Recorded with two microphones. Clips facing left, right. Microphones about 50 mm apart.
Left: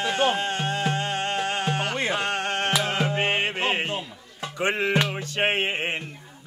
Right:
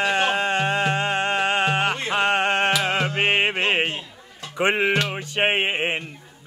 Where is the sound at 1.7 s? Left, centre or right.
Right.